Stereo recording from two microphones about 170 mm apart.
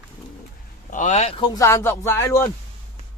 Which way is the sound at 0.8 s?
45° left (ahead or behind).